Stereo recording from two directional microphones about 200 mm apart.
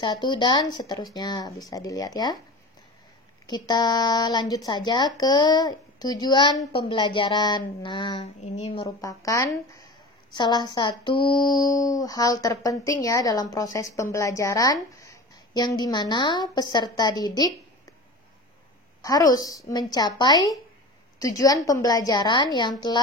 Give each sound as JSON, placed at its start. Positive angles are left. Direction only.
{"t": 0.0, "sound": "a woman's voice", "side_deg": 25}
{"t": 3.4, "sound": "a woman's voice", "side_deg": 20}
{"t": 8.8, "sound": "a woman's voice", "side_deg": 15}
{"t": 19.0, "sound": "a woman's voice", "side_deg": 20}